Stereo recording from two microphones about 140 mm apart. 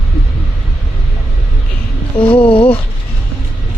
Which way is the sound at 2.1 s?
40° left (ahead or behind).